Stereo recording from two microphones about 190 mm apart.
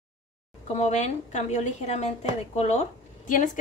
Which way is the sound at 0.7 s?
35° left (ahead or behind).